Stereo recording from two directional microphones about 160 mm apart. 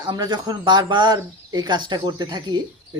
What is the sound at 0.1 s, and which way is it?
Speech, 25° right (ahead or behind).